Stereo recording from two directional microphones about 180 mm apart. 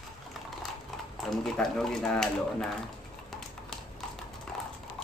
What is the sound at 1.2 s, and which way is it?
Speech, centre (ahead or behind).